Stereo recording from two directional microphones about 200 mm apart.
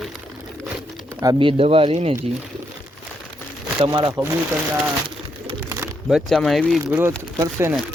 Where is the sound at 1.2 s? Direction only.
20° right (ahead or behind).